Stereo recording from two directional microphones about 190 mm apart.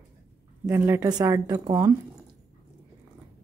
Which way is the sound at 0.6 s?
10° right (ahead or behind).